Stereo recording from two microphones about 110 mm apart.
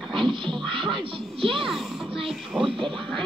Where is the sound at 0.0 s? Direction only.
Centre (ahead or behind).